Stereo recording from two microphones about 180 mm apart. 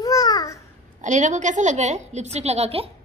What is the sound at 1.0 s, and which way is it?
A woman's voice, 45° right (ahead or behind).